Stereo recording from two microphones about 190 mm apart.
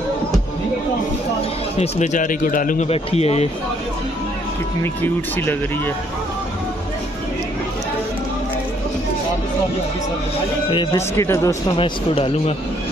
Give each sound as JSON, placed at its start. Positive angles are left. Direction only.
{"t": 1.8, "sound": "speech", "side_deg": 40}
{"t": 2.9, "sound": "speech", "side_deg": 30}
{"t": 5.0, "sound": "speech", "side_deg": 10}
{"t": 10.7, "sound": "speech", "side_deg": 25}
{"t": 11.0, "sound": "speech", "side_deg": 15}
{"t": 11.7, "sound": "speech", "side_deg": 30}